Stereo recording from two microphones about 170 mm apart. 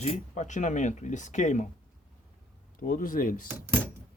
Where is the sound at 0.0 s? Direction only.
45° left (ahead or behind).